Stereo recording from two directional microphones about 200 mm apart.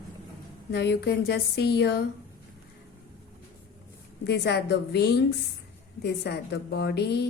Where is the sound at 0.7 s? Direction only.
55° left (ahead or behind).